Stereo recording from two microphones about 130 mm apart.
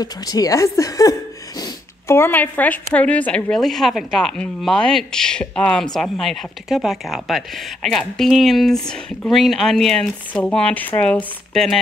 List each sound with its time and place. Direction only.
0.0 s a woman's voice: 30° left (ahead or behind); by 11.8 s centre (ahead or behind)